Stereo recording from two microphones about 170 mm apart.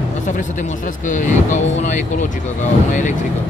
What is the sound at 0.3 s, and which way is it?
Speech, 45° left (ahead or behind).